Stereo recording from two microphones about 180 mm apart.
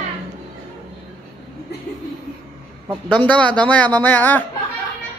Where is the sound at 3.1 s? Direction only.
5° left (ahead or behind).